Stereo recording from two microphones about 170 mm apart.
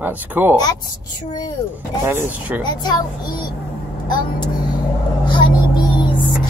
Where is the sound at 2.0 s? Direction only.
15° right (ahead or behind).